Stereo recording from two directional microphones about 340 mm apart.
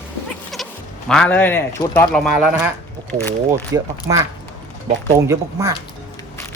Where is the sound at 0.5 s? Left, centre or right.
Centre.